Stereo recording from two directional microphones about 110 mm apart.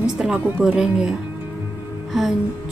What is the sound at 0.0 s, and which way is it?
Music, 5° right (ahead or behind).